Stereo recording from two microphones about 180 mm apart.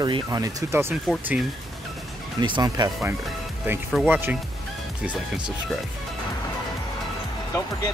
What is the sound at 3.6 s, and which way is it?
Speech, 5° right (ahead or behind).